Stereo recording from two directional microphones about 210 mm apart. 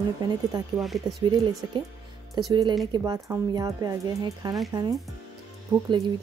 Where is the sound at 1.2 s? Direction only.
20° right (ahead or behind).